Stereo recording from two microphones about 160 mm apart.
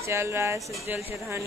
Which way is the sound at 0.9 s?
10° right (ahead or behind).